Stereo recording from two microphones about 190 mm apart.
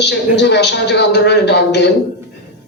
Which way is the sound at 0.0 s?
65° left (ahead or behind).